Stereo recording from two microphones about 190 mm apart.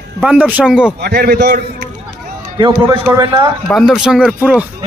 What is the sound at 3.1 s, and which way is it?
Speech, 25° right (ahead or behind).